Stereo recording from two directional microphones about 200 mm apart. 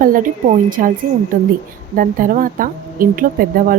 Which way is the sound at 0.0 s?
45° right (ahead or behind).